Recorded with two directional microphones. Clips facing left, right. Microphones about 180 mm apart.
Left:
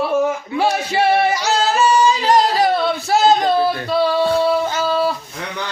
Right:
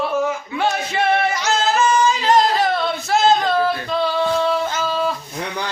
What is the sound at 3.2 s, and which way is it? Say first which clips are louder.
Singing: left 2 dB; 10° left (ahead or behind).